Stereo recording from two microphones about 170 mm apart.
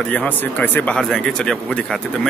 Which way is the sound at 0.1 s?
10° left (ahead or behind).